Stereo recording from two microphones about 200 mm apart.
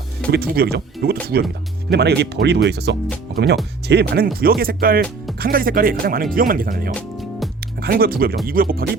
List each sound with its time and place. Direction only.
0.3 s speech: 50° right (ahead or behind)
4.4 s speech: 50° right (ahead or behind)
6.9 s music: centre (ahead or behind)
7.8 s speech: 50° right (ahead or behind)